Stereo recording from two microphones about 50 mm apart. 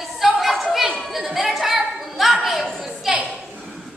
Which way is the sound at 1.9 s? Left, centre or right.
Centre.